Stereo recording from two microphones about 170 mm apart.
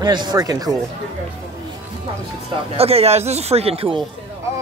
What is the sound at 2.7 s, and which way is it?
Speech, 35° right (ahead or behind).